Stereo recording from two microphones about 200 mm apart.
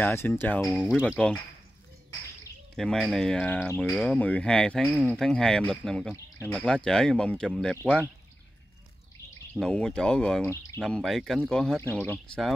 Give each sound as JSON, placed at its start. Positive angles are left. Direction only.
{"t": 0.0, "sound": "speech", "side_deg": 10}
{"t": 2.7, "sound": "speech", "side_deg": 0}
{"t": 6.1, "sound": "speech", "side_deg": 15}
{"t": 6.5, "sound": "speech", "side_deg": 5}
{"t": 9.5, "sound": "speech", "side_deg": 5}